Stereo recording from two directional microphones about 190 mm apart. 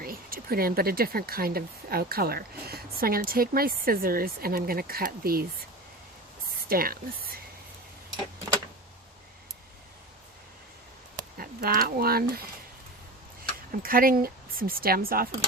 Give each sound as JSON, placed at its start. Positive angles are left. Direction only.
{"t": 0.0, "sound": "speech", "side_deg": -50}
{"t": 6.7, "sound": "speech", "side_deg": -50}
{"t": 11.3, "sound": "speech", "side_deg": -50}